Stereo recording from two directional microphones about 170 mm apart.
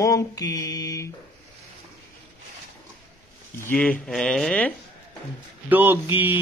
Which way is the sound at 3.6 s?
10° left (ahead or behind).